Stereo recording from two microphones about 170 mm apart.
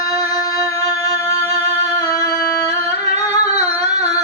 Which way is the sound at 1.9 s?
20° left (ahead or behind).